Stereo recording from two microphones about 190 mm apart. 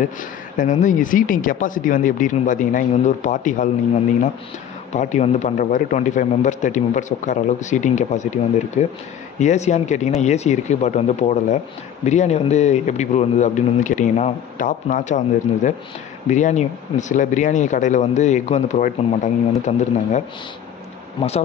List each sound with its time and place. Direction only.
0.0 s speech: 45° left (ahead or behind)
4.9 s speech: 35° left (ahead or behind)